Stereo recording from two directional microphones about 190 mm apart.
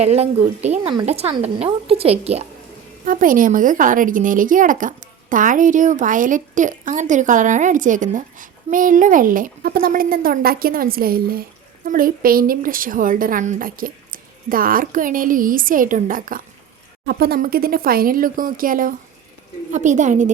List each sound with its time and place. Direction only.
0.0 s a woman's voice: 35° right (ahead or behind)
3.0 s a woman's voice: 45° right (ahead or behind)